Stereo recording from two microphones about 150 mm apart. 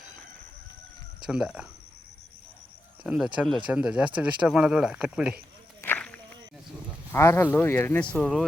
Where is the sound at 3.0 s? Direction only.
5° right (ahead or behind).